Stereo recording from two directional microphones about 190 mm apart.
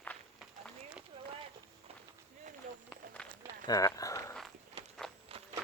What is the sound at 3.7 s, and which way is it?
Run, 20° left (ahead or behind).